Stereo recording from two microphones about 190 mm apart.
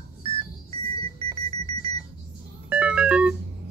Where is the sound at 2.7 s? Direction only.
10° right (ahead or behind).